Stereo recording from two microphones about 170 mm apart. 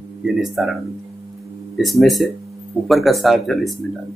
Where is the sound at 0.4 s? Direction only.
Centre (ahead or behind).